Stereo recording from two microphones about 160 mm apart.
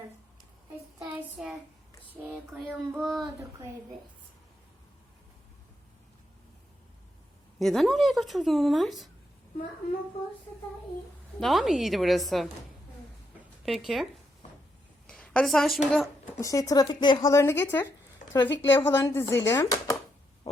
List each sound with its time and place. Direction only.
0.9 s child singing: 5° right (ahead or behind)
2.3 s speech: centre (ahead or behind)
7.6 s speech: centre (ahead or behind)
11.3 s speech: centre (ahead or behind)
13.7 s speech: centre (ahead or behind)
15.0 s a sound: 5° left (ahead or behind)
16.3 s a woman's voice: 20° left (ahead or behind)